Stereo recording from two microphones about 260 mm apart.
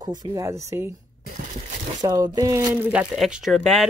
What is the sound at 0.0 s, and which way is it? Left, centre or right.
Speech, centre.